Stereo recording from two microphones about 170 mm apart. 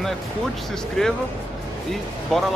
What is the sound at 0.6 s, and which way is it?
Speech, centre (ahead or behind).